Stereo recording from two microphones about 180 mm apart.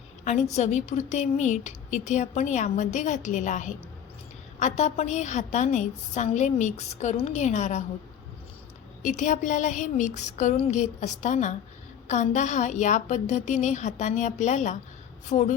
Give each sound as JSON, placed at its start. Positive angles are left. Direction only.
{"t": 0.3, "sound": "a woman's voice", "side_deg": 40}
{"t": 9.0, "sound": "a sound", "side_deg": 45}
{"t": 12.0, "sound": "a woman's voice", "side_deg": 40}